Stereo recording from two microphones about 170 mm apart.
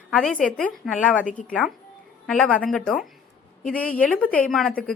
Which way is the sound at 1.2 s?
50° left (ahead or behind).